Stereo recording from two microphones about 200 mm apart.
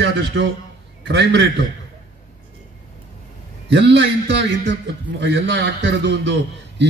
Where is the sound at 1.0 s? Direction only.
60° right (ahead or behind).